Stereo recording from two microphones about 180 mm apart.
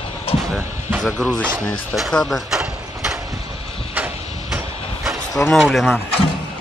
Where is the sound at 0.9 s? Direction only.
10° right (ahead or behind).